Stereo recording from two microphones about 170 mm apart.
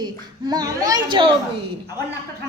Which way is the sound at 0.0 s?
25° right (ahead or behind).